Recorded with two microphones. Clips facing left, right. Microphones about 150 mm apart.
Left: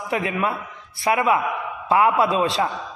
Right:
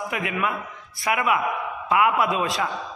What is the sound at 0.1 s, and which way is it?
A man's voice, 30° left (ahead or behind).